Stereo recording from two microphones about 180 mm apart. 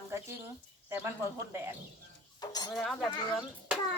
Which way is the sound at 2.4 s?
20° left (ahead or behind).